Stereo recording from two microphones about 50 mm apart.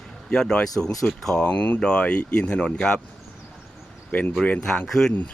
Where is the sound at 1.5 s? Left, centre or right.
Left.